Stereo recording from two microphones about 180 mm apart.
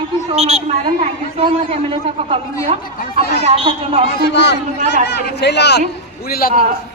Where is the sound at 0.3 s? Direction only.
35° right (ahead or behind).